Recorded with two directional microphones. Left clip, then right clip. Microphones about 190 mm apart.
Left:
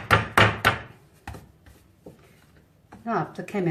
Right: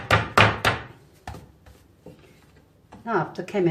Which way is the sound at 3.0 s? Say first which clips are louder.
Right 2 dB; 15° right (ahead or behind).